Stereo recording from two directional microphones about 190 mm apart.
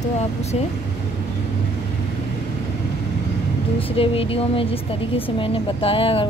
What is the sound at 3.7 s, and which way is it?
Speech, 30° left (ahead or behind).